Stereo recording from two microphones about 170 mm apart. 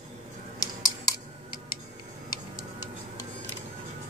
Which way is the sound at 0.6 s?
25° left (ahead or behind).